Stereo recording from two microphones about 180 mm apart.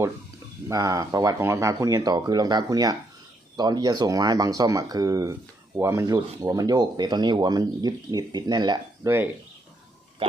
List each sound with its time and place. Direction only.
0.7 s speech: 20° right (ahead or behind)